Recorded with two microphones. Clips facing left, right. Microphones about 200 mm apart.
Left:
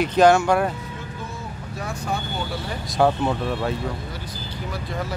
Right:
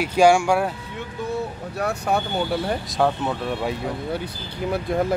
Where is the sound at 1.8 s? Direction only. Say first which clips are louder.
Right 6 dB; 65° right (ahead or behind).